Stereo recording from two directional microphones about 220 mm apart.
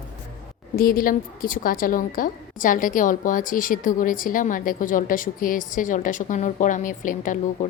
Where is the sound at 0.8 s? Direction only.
40° left (ahead or behind).